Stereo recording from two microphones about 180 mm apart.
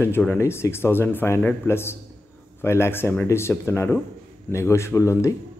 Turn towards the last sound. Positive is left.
turn(degrees=15)  # may be behind; listen again after turning